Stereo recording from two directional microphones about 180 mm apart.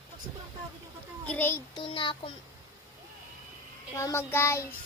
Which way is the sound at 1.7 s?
25° left (ahead or behind).